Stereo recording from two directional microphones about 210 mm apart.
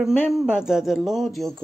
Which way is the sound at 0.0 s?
Centre (ahead or behind).